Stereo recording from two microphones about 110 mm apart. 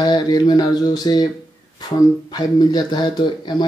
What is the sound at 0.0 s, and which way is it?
Speech, 40° left (ahead or behind).